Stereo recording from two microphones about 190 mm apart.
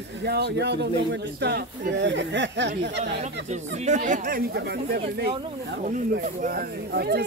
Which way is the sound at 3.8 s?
40° right (ahead or behind).